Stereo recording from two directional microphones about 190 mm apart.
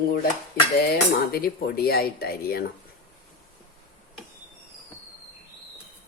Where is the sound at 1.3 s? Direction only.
55° left (ahead or behind).